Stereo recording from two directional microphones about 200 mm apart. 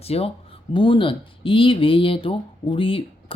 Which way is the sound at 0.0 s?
30° left (ahead or behind).